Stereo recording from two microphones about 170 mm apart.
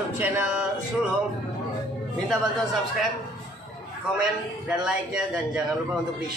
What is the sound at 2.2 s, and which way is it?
Speech, centre (ahead or behind).